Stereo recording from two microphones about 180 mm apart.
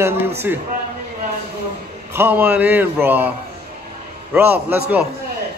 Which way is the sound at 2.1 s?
10° right (ahead or behind).